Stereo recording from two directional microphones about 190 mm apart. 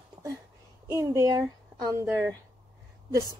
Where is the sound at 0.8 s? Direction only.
15° right (ahead or behind).